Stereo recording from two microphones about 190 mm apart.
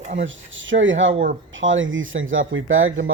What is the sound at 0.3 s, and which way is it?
Speech, 85° right.